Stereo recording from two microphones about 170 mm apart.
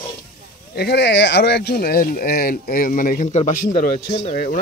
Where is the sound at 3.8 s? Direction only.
60° left (ahead or behind).